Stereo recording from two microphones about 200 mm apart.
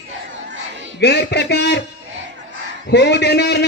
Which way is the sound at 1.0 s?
55° left (ahead or behind).